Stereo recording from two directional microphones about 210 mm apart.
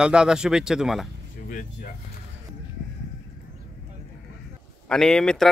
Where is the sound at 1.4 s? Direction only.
40° left (ahead or behind).